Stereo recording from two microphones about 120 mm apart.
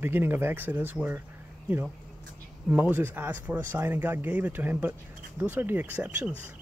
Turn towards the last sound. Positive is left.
turn(degrees=-10)  # may be behind; listen again after turning